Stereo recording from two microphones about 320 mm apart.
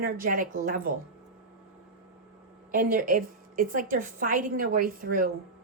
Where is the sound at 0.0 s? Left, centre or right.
Right.